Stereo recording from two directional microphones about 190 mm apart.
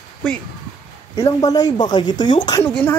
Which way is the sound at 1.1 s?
20° left (ahead or behind).